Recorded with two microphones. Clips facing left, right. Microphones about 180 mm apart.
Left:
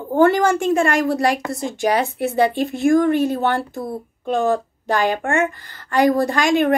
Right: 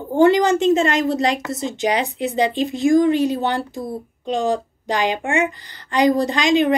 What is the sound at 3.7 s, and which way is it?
Speech, 55° left (ahead or behind).